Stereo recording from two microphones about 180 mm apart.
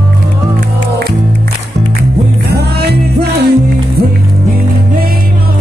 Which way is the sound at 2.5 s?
65° right (ahead or behind).